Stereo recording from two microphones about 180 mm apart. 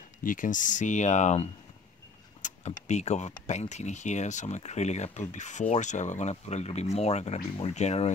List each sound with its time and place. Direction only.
0.2 s speech: 50° left (ahead or behind)